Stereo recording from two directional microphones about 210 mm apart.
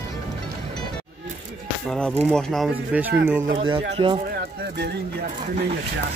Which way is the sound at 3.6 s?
25° right (ahead or behind).